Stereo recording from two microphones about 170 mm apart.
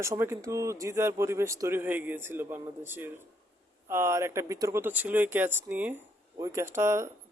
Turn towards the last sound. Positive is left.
turn(degrees=-15)  # may be behind; listen again after turning